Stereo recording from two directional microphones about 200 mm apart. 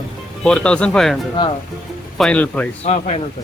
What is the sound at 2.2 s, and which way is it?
Speech, 5° left (ahead or behind).